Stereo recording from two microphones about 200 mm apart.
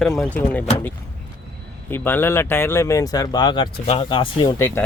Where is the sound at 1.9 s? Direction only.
10° left (ahead or behind).